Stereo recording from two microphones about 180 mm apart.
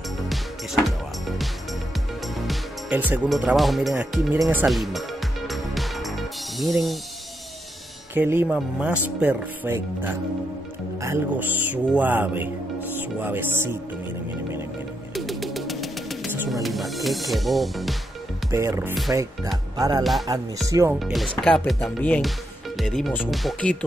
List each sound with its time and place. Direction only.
2.4 s speech: 10° right (ahead or behind)
5.5 s music: centre (ahead or behind)
8.1 s speech: 10° right (ahead or behind)
15.1 s music: centre (ahead or behind)
16.6 s speech: centre (ahead or behind)
18.5 s speech: 15° right (ahead or behind)
20.0 s speech: centre (ahead or behind)
20.6 s speech: 20° right (ahead or behind)
21.0 s speech: centre (ahead or behind)